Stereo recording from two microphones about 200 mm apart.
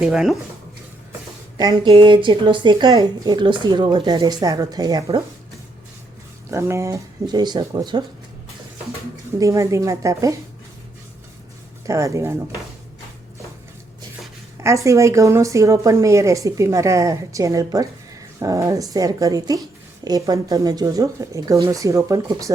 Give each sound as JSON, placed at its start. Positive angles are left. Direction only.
{"t": 0.0, "sound": "speech", "side_deg": 0}
{"t": 1.5, "sound": "a woman's voice", "side_deg": -20}
{"t": 6.5, "sound": "a woman's voice", "side_deg": -15}
{"t": 9.4, "sound": "a woman's voice", "side_deg": -15}
{"t": 11.9, "sound": "a woman's voice", "side_deg": -15}
{"t": 14.6, "sound": "a woman's voice", "side_deg": -15}